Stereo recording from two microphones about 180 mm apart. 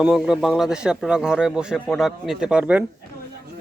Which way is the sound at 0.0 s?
5° right (ahead or behind).